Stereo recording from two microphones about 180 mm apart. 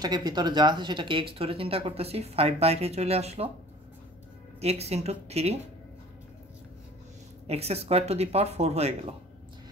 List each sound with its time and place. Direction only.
0.0 s speech: 20° right (ahead or behind)
4.6 s speech: 35° right (ahead or behind)
7.4 s speech: 35° right (ahead or behind)